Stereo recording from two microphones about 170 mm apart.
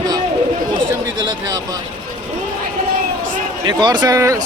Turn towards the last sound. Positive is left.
turn(degrees=-20)  # may be behind; listen again after turning